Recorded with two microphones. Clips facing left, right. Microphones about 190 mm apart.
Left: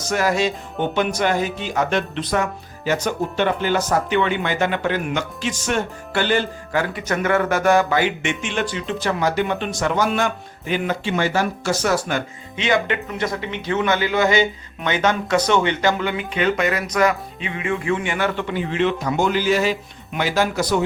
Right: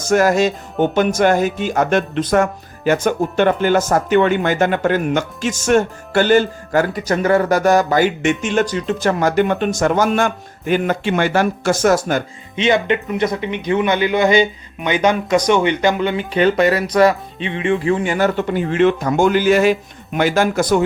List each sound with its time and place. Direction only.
0.0 s speech: 45° right (ahead or behind)
12.5 s speech: 20° right (ahead or behind)
16.1 s speech: 35° right (ahead or behind); by 20.8 s 50° right (ahead or behind)